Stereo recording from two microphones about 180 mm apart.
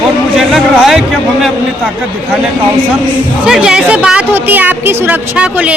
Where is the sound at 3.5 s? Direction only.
5° right (ahead or behind).